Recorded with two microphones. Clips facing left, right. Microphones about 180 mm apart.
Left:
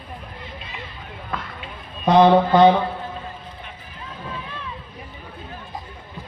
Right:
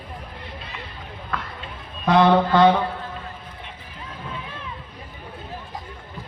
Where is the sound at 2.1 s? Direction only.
20° left (ahead or behind).